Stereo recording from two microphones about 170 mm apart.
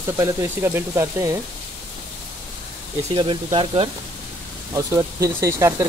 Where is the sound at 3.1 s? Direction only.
30° right (ahead or behind).